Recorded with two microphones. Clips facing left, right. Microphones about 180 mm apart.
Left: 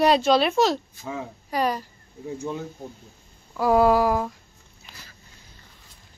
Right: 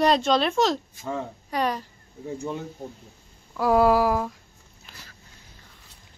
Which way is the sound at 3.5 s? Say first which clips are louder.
Left 1 dB; centre (ahead or behind).